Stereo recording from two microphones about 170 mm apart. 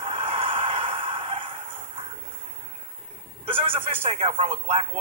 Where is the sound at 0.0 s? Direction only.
30° right (ahead or behind).